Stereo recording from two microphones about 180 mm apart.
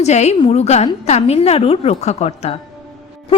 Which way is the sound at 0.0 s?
40° left (ahead or behind).